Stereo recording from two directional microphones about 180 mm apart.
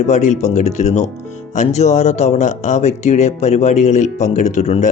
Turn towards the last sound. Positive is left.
turn(degrees=40)  # may be behind; listen again after turning